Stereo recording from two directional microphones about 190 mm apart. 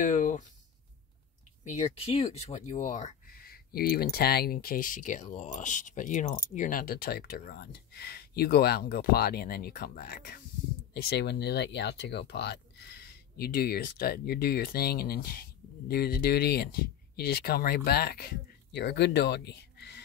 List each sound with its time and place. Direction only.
0.0 s speech: 40° left (ahead or behind)
1.6 s speech: 35° left (ahead or behind)
10.9 s speech: 60° left (ahead or behind)